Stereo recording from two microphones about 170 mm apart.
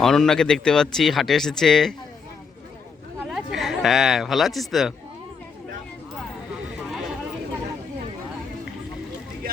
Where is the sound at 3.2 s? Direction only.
Centre (ahead or behind).